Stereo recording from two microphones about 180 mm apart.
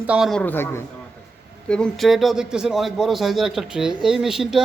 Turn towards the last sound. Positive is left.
turn(degrees=0)  # may be behind; listen again after turning